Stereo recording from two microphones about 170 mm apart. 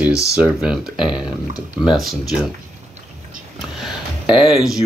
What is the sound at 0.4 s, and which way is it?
Speech, 5° right (ahead or behind).